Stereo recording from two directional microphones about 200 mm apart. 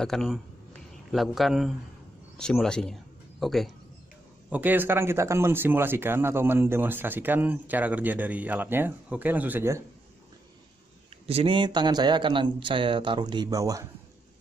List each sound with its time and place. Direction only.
0.0 s a man's voice: centre (ahead or behind)
11.2 s speech: 30° right (ahead or behind)